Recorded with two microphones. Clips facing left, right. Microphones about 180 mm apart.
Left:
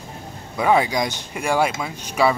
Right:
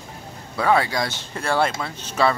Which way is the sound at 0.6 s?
15° left (ahead or behind).